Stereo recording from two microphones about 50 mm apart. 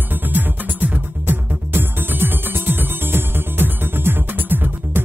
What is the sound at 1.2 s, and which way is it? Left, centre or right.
Music, right.